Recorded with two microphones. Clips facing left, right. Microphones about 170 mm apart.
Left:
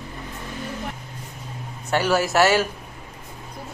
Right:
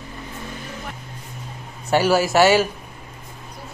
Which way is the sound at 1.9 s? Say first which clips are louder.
Right 3 dB; 10° right (ahead or behind).